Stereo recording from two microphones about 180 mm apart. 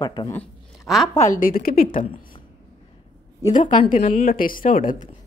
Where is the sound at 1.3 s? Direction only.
55° left (ahead or behind).